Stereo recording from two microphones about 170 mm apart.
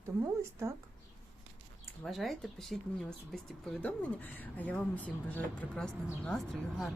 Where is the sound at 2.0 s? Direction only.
Centre (ahead or behind).